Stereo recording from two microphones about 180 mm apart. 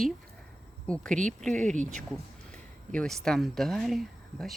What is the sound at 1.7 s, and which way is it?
Speech, 40° right (ahead or behind).